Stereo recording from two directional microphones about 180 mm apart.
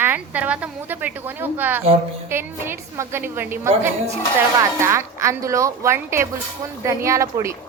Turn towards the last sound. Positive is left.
turn(degrees=-15)  # may be behind; listen again after turning